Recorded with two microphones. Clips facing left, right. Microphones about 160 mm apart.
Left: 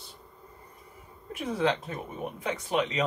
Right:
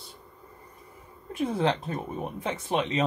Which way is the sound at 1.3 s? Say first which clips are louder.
Right 2 dB; 30° right (ahead or behind).